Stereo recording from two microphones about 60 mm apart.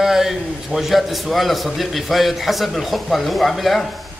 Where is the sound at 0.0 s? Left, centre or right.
Centre.